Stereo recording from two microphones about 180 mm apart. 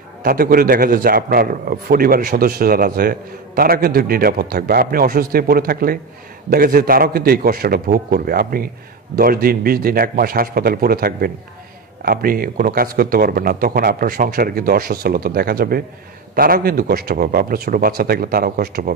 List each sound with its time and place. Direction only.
0.2 s a man's voice: 55° right (ahead or behind)